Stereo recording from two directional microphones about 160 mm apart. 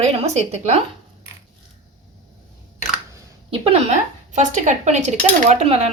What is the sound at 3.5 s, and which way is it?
Speech, 35° right (ahead or behind).